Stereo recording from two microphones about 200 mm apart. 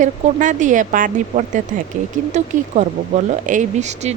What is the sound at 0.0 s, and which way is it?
Speech, 40° right (ahead or behind).